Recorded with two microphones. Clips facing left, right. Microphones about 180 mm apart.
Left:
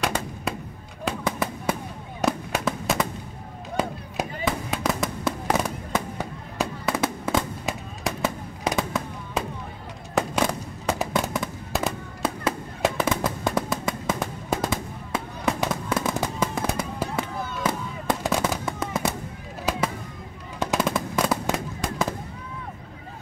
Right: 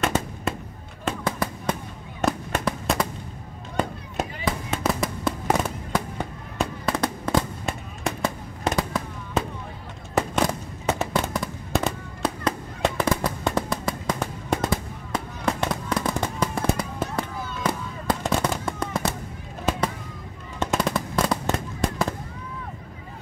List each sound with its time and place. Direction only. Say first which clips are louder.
0.0 s gunshot: right 2 dB; centre (ahead or behind)
1.0 s fireworks: even; 5° left (ahead or behind)
20.5 s fireworks: even; centre (ahead or behind)